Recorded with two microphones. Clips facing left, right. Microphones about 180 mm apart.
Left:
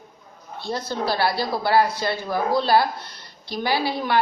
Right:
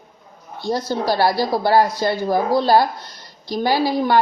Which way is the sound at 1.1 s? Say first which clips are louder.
Right 6 dB; 40° right (ahead or behind).